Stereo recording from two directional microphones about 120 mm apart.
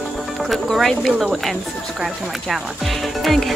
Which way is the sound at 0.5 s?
Centre (ahead or behind).